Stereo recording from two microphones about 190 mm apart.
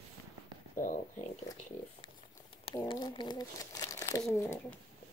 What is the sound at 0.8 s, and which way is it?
Speech, 45° left (ahead or behind).